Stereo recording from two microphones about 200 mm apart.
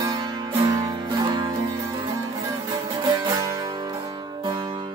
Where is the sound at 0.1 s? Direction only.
20° right (ahead or behind).